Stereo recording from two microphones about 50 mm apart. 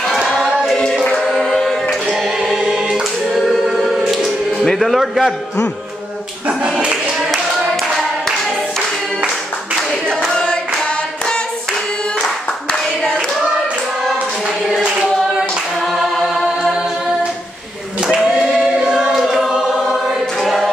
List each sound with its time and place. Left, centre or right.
0.4 s choir: centre
4.7 s a man's voice: centre
6.6 s clapping: right
15.9 s music: centre
18.5 s choir: centre
20.3 s choir: centre